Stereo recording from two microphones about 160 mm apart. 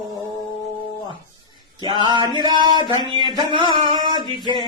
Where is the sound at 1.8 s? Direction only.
30° right (ahead or behind).